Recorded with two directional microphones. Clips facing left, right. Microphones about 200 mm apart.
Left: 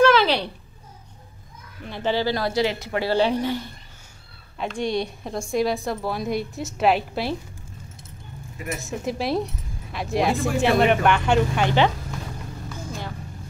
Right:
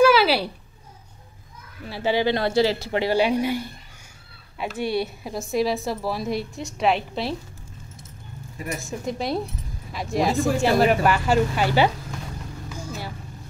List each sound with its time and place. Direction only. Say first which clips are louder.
0.0 s a sound: right 1 dB; 10° right (ahead or behind)
1.9 s speech: right 1 dB; 10° right (ahead or behind)
2.2 s speech: right 2 dB; 25° right (ahead or behind)
3.0 s a woman's voice: even; 15° right (ahead or behind); by 7.3 s centre (ahead or behind)
8.8 s a woman's voice: left 2 dB; centre (ahead or behind)
12.6 s vehicle: even; 5° right (ahead or behind)